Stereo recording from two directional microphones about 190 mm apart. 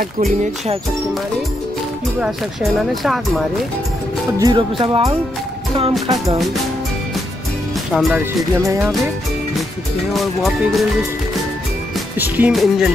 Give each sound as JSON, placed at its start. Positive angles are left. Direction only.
{"t": 2.1, "sound": "speech", "side_deg": -5}
{"t": 4.4, "sound": "speech", "side_deg": -25}
{"t": 7.9, "sound": "music", "side_deg": -5}
{"t": 10.1, "sound": "speech", "side_deg": 0}
{"t": 12.2, "sound": "music", "side_deg": -5}